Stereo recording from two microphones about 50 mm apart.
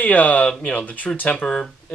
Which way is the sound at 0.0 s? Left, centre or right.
Left.